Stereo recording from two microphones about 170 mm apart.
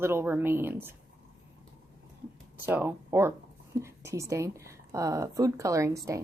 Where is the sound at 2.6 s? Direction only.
10° right (ahead or behind).